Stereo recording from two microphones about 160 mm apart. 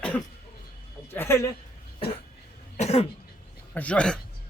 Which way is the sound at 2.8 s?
40° left (ahead or behind).